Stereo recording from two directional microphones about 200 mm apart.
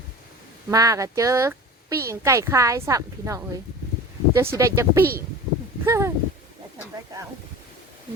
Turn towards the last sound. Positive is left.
turn(degrees=-15)  # may be behind; listen again after turning